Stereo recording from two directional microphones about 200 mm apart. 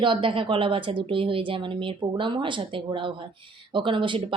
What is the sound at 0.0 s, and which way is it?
Speech, 25° right (ahead or behind).